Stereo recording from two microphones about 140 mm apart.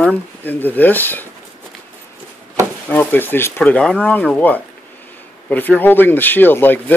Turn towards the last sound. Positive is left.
turn(degrees=15)  # may be behind; listen again after turning